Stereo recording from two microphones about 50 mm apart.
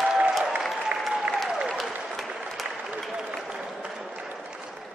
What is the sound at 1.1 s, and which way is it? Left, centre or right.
Applause, centre.